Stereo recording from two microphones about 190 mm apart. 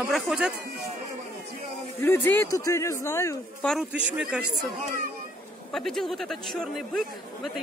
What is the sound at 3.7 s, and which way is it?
A man's voice, 5° right (ahead or behind).